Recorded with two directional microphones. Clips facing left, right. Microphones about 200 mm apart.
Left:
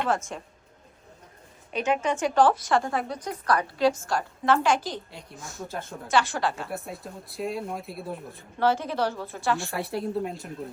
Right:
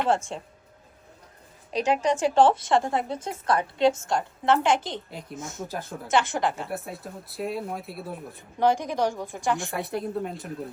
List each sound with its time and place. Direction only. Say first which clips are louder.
0.1 s speech: right 3 dB; 30° right (ahead or behind)
1.7 s a woman's voice: right 2 dB; 35° right (ahead or behind)
5.6 s speech: left 3 dB; 5° right (ahead or behind)
6.1 s a woman's voice: right 1 dB; 20° right (ahead or behind)
6.7 s speech: right 1 dB; centre (ahead or behind)
8.4 s a woman's voice: right 2 dB; 15° right (ahead or behind)
9.9 s speech: left 2 dB; centre (ahead or behind)